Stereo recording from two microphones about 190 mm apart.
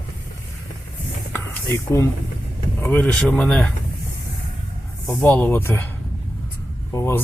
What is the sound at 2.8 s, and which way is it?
Speech, 5° left (ahead or behind).